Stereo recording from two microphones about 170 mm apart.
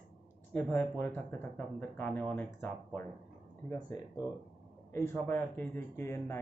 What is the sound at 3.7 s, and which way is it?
Speech, 25° left (ahead or behind).